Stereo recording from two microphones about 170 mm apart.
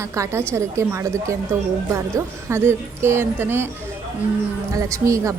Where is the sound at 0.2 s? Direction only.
15° right (ahead or behind).